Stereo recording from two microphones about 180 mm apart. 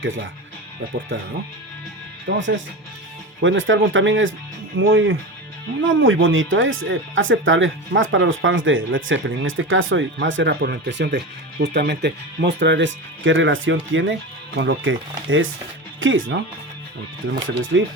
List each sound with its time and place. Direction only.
2.3 s speech: 85° right
17.4 s speech: 90° right